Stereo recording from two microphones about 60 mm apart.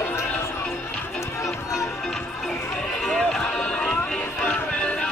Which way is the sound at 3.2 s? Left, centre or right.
Centre.